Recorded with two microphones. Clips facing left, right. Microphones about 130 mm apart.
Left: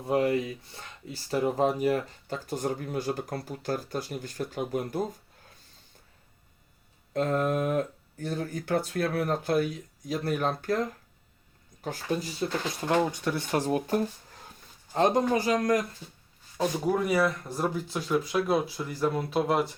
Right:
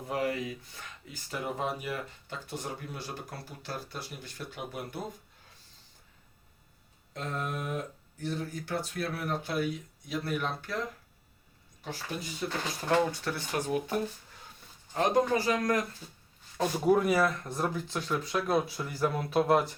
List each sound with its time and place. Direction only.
0.1 s speech: 25° left (ahead or behind)
1.1 s speech: 40° left (ahead or behind)
7.1 s speech: 50° left (ahead or behind)
12.4 s speech: 40° left (ahead or behind)
12.9 s speech: 20° left (ahead or behind)
13.5 s speech: 35° left (ahead or behind)
14.9 s speech: 25° left (ahead or behind)
16.6 s speech: 5° right (ahead or behind)